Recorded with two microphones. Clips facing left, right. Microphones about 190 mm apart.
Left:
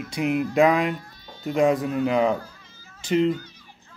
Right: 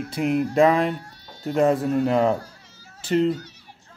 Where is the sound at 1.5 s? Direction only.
Centre (ahead or behind).